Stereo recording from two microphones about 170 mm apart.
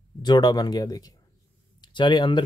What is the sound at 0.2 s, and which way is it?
Speech, 25° left (ahead or behind).